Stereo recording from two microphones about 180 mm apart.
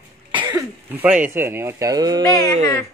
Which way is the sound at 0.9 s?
10° right (ahead or behind).